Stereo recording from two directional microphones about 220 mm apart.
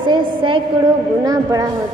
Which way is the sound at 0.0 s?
20° right (ahead or behind).